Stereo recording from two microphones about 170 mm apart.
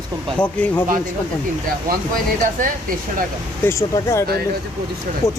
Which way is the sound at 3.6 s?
15° left (ahead or behind).